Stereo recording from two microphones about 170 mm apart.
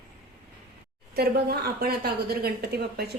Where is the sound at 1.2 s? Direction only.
65° right (ahead or behind).